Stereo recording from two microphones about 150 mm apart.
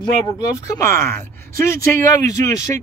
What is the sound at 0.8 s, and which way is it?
Speech, 15° left (ahead or behind).